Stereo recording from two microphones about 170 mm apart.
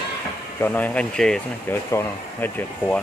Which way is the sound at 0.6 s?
10° left (ahead or behind).